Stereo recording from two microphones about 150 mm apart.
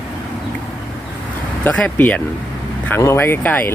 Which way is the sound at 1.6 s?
10° left (ahead or behind).